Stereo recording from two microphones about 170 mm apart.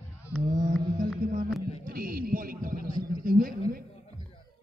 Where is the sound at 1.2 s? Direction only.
55° right (ahead or behind).